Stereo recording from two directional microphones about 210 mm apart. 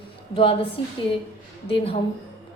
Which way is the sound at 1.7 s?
25° left (ahead or behind).